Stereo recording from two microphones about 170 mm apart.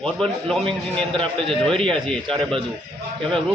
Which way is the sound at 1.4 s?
5° left (ahead or behind).